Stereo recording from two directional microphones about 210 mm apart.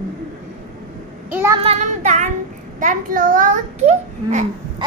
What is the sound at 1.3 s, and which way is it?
Child singing, 15° right (ahead or behind).